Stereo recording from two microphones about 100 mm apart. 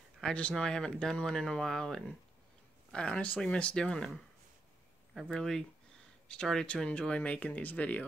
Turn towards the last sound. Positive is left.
turn(degrees=15)  # may be behind; listen again after turning